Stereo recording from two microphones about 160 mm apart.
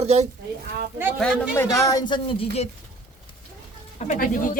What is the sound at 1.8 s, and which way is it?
Speech, 25° left (ahead or behind).